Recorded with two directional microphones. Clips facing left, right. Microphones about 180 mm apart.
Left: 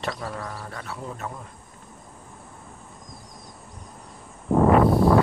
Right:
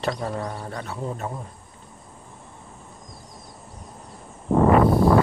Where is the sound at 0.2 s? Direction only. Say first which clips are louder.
Right 4 dB; 25° right (ahead or behind).